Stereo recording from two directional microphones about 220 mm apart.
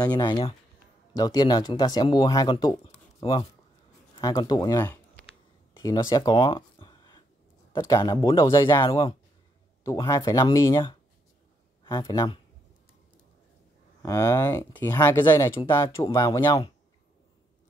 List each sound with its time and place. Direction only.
0.1 s speech: 20° left (ahead or behind)
14.0 s speech: 15° left (ahead or behind)